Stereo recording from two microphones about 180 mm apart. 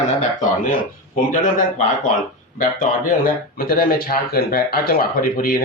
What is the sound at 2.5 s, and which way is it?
Speech, 50° left (ahead or behind).